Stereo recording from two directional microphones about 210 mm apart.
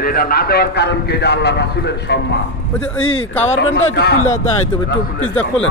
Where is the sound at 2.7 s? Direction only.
5° left (ahead or behind).